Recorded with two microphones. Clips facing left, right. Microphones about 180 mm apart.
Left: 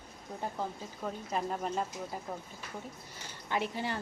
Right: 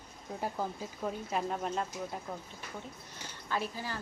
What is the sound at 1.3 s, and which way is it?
Speech, centre (ahead or behind).